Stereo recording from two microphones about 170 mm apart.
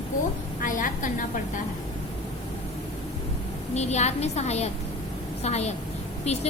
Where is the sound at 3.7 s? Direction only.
40° left (ahead or behind).